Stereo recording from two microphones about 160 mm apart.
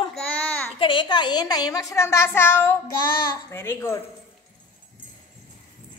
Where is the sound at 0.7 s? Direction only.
30° left (ahead or behind); by 4.0 s 15° left (ahead or behind).